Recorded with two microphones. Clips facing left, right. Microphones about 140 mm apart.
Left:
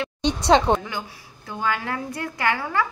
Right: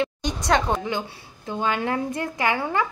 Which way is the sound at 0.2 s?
25° left (ahead or behind).